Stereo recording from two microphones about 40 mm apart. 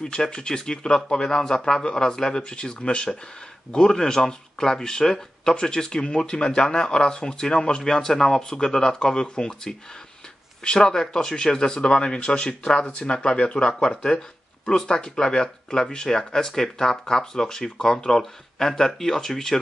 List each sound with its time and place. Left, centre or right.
0.0 s speech: centre
7.8 s speech: centre